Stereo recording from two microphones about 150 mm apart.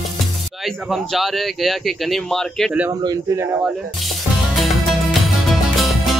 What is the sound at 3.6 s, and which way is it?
Speech, centre (ahead or behind).